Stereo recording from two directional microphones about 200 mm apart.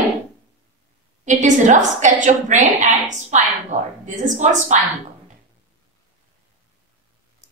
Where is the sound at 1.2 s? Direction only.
35° right (ahead or behind).